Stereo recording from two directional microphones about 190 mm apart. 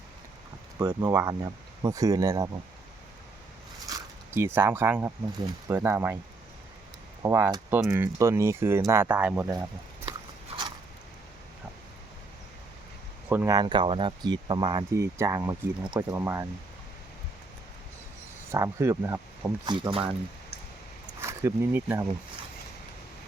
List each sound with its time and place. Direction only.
0.8 s speech: 10° right (ahead or behind)
3.8 s speech: 15° right (ahead or behind)
7.2 s speech: 15° right (ahead or behind)
13.2 s speech: 10° right (ahead or behind)
15.8 s speech: 5° right (ahead or behind)
18.5 s speech: 15° right (ahead or behind)
21.2 s speech: 15° right (ahead or behind)